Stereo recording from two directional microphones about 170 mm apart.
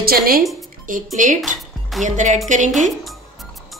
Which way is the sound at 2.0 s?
45° right (ahead or behind).